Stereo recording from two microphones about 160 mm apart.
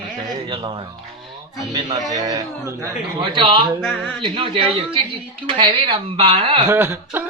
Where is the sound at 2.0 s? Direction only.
20° right (ahead or behind).